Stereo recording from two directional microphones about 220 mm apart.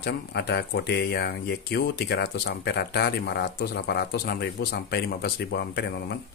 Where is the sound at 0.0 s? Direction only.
50° left (ahead or behind).